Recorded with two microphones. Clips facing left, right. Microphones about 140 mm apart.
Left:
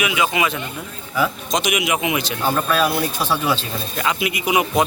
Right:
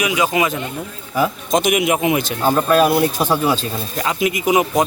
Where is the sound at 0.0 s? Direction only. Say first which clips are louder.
Right 2 dB; 40° right (ahead or behind).